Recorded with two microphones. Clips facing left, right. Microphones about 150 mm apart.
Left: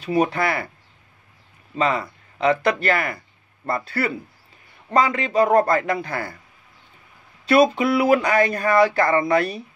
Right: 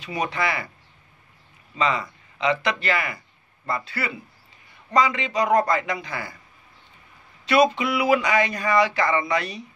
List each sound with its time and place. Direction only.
0.2 s speech: 50° left (ahead or behind)
1.8 s speech: 50° left (ahead or behind)
7.4 s speech: 50° left (ahead or behind)